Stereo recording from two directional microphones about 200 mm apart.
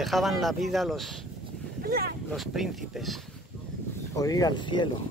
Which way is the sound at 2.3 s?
Centre (ahead or behind).